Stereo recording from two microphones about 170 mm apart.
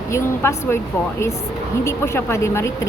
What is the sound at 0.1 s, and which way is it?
Speech, 15° left (ahead or behind).